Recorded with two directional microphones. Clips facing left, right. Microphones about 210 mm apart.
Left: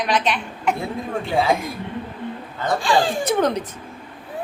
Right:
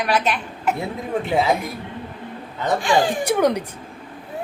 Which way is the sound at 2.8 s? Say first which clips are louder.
Right 1 dB; 20° right (ahead or behind).